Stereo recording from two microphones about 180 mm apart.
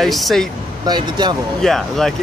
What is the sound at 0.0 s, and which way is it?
Speech, centre (ahead or behind).